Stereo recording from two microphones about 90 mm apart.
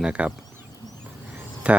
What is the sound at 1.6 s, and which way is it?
Speech, 15° right (ahead or behind).